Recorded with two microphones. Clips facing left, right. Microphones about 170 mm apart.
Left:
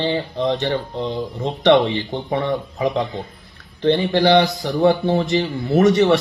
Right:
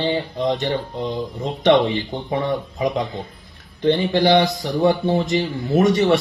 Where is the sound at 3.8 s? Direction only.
15° right (ahead or behind).